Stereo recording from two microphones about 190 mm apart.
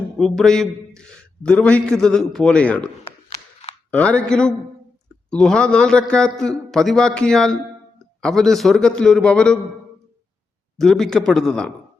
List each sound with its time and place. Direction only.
0.2 s a man's voice: 5° left (ahead or behind)
3.9 s a man's voice: 5° left (ahead or behind)
10.8 s a man's voice: centre (ahead or behind)